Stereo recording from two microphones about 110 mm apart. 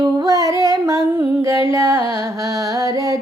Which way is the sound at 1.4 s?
25° right (ahead or behind).